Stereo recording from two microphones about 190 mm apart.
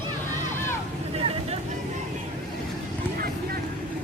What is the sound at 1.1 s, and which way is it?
Vehicle, 30° right (ahead or behind).